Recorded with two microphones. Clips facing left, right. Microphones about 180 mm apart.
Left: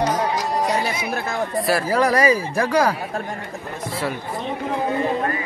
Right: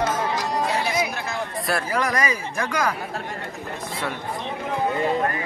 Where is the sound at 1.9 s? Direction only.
35° left (ahead or behind).